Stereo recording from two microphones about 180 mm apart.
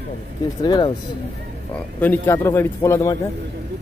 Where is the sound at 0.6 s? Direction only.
25° left (ahead or behind).